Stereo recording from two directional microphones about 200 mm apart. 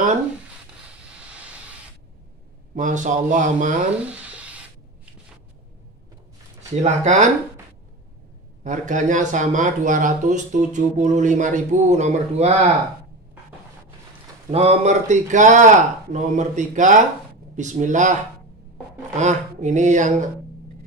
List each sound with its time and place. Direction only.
1.2 s vehicle: 5° right (ahead or behind)
2.7 s speech: 40° right (ahead or behind)
4.0 s a sound: 5° right (ahead or behind)
6.7 s speech: 35° right (ahead or behind)
8.6 s speech: 40° right (ahead or behind)
14.5 s speech: 30° right (ahead or behind)
19.1 s speech: 35° right (ahead or behind)